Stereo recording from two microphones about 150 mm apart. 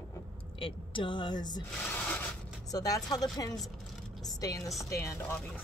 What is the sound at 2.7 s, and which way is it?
Speech, 25° left (ahead or behind).